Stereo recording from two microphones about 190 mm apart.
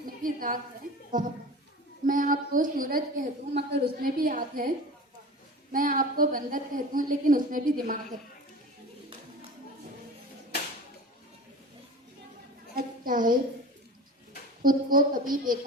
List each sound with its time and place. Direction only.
0.0 s a woman's voice: 45° right (ahead or behind)
3.5 s a woman's voice: 60° right (ahead or behind)
5.7 s a woman's voice: 45° right (ahead or behind)
12.7 s a sound: 45° right (ahead or behind)
14.6 s a woman's voice: 50° right (ahead or behind)